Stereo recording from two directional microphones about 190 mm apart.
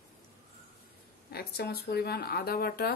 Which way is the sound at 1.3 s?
55° left (ahead or behind).